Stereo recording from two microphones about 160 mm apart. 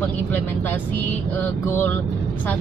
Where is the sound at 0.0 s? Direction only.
10° left (ahead or behind).